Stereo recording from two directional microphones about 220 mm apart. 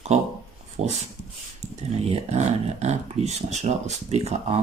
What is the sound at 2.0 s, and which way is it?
Speech, 30° right (ahead or behind).